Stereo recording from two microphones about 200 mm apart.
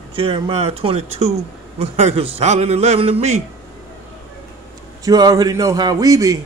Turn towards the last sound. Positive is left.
turn(degrees=-15)  # may be behind; listen again after turning